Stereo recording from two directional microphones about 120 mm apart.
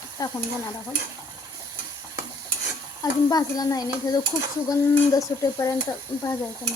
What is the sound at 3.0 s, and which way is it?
Speech, 30° left (ahead or behind).